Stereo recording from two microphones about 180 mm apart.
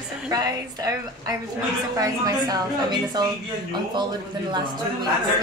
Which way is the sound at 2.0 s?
20° right (ahead or behind).